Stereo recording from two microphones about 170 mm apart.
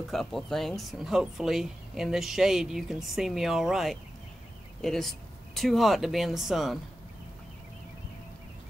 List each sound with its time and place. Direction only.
0.1 s speech: centre (ahead or behind)